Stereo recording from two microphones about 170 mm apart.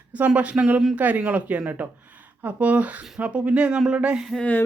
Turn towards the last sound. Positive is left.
turn(degrees=10)  # may be behind; listen again after turning